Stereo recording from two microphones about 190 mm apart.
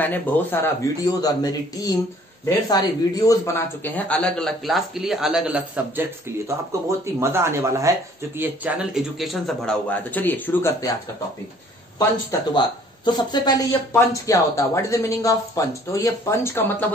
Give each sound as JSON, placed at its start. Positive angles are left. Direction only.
{"t": 0.0, "sound": "speech", "side_deg": 10}
{"t": 12.0, "sound": "speech", "side_deg": 20}